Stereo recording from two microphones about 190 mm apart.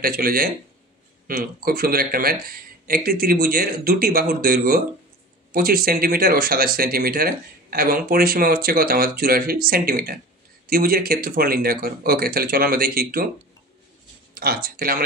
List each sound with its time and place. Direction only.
0.0 s speech: 50° right (ahead or behind)
14.3 s speech: 55° right (ahead or behind)